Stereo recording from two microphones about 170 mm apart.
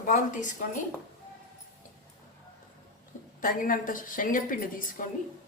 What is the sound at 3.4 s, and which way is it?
A woman's voice, 55° left (ahead or behind).